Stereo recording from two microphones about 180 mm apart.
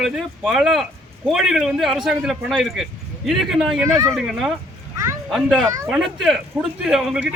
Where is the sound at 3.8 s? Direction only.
15° right (ahead or behind).